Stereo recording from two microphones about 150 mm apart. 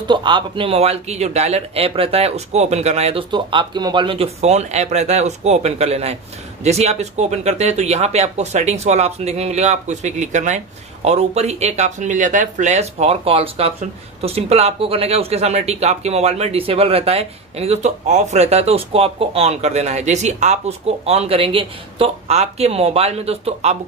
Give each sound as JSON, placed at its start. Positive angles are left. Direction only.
{"t": 0.1, "sound": "speech", "side_deg": -30}